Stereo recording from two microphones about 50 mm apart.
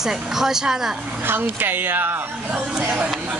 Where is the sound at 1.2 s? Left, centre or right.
Right.